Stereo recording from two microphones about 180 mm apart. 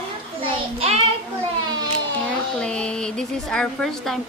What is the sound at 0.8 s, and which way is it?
Child singing, 35° right (ahead or behind).